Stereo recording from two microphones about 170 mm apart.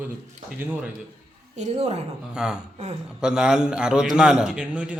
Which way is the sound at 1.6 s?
40° right (ahead or behind).